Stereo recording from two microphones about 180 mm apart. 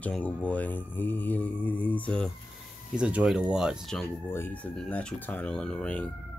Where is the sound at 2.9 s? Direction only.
5° right (ahead or behind).